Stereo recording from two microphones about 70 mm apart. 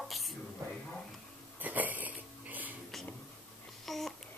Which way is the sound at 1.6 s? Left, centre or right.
Right.